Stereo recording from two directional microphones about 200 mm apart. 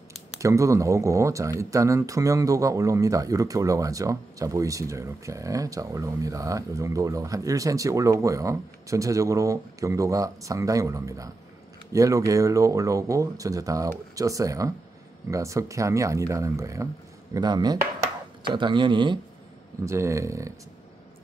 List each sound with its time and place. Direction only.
0.4 s speech: 15° right (ahead or behind)